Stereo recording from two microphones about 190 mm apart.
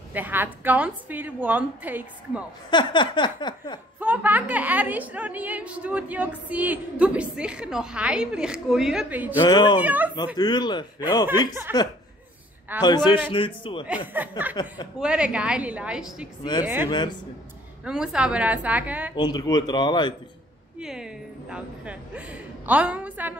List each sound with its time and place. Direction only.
0.1 s a woman's voice: 10° right (ahead or behind)
2.7 s snicker: 25° left (ahead or behind)
4.0 s a woman's voice: 10° right (ahead or behind)
9.4 s snicker: 25° left (ahead or behind)
9.8 s a woman's voice: 10° right (ahead or behind)
10.1 s snicker: 20° left (ahead or behind)
11.2 s a woman's voice: 10° right (ahead or behind)
12.8 s snicker: 25° left (ahead or behind)
14.2 s a woman's voice: 10° right (ahead or behind)
14.5 s snicker: 20° left (ahead or behind)
15.0 s a woman's voice: 5° right (ahead or behind)
19.1 s snicker: 20° left (ahead or behind)
20.8 s a woman's voice: 5° right (ahead or behind)